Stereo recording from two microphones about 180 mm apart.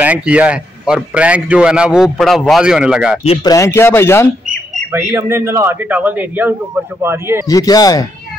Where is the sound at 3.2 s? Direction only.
35° left (ahead or behind).